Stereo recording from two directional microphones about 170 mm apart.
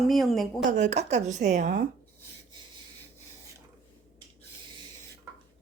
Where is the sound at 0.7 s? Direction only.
45° right (ahead or behind).